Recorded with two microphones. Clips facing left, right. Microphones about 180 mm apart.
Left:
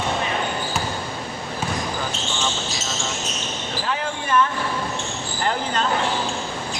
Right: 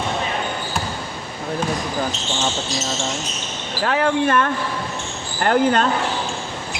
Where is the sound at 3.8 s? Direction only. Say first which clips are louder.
Right 9 dB; 65° right (ahead or behind).